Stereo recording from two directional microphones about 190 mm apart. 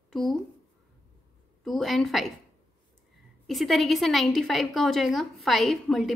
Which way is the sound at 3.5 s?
Centre (ahead or behind).